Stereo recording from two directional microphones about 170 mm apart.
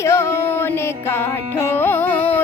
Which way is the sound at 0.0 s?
15° left (ahead or behind).